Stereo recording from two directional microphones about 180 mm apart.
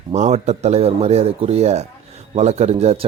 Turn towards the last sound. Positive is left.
turn(degrees=-35)  # may be behind; listen again after turning